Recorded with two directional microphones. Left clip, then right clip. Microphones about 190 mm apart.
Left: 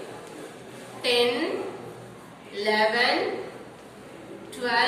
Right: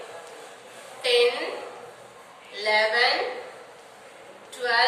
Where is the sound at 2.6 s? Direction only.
20° left (ahead or behind).